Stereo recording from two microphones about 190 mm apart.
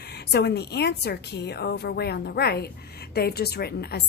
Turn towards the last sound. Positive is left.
turn(degrees=60)  # may be behind; listen again after turning